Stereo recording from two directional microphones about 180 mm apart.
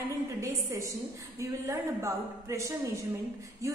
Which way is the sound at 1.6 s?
15° right (ahead or behind).